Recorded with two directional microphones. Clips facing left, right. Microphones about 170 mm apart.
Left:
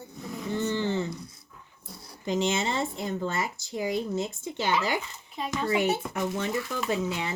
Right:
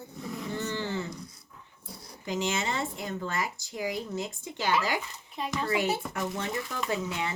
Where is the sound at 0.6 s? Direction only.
20° left (ahead or behind).